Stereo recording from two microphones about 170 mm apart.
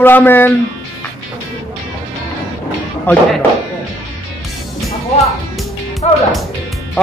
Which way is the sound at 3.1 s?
10° left (ahead or behind).